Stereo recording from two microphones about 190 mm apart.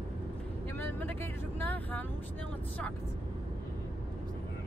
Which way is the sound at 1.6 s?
10° left (ahead or behind).